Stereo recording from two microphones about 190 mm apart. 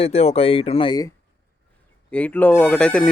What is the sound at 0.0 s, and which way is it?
Speech, 30° left (ahead or behind).